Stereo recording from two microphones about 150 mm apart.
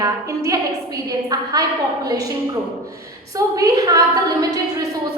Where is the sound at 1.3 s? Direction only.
25° right (ahead or behind).